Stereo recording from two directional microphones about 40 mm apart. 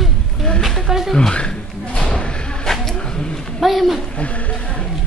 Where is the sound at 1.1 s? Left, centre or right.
Centre.